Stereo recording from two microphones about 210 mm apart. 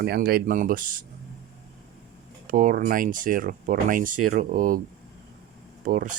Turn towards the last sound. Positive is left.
turn(degrees=-40)  # may be behind; listen again after turning